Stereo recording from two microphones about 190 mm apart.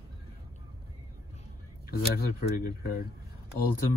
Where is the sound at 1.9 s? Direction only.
50° left (ahead or behind).